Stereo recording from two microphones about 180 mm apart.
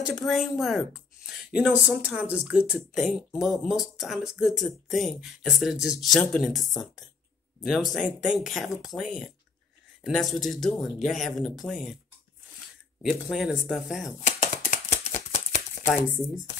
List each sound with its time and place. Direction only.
0.0 s speech: centre (ahead or behind)
10.0 s speech: centre (ahead or behind)
13.0 s speech: centre (ahead or behind)
14.2 s a sound: 40° left (ahead or behind)